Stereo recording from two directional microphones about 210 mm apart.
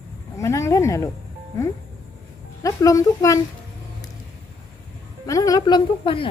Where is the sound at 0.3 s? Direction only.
15° left (ahead or behind).